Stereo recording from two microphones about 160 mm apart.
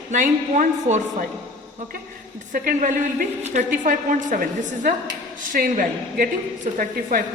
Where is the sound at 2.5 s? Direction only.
55° right (ahead or behind).